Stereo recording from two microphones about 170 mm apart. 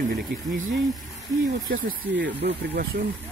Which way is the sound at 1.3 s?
20° right (ahead or behind).